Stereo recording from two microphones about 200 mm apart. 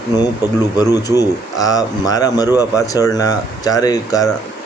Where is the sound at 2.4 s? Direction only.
10° right (ahead or behind).